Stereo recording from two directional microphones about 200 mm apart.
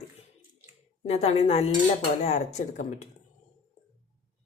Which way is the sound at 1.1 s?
30° left (ahead or behind).